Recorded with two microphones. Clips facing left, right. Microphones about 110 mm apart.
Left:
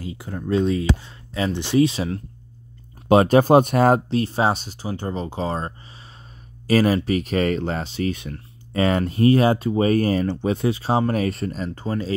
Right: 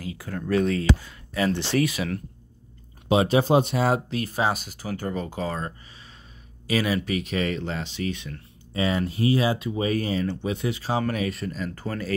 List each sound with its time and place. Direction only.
0.0 s speech: 25° left (ahead or behind)
3.1 s speech: 50° left (ahead or behind)
4.1 s speech: 30° left (ahead or behind)
8.7 s speech: 55° left (ahead or behind); by 11.7 s 40° left (ahead or behind)
11.7 s speech: 20° left (ahead or behind)